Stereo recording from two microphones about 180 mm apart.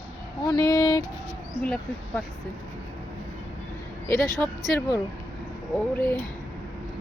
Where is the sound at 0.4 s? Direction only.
20° left (ahead or behind).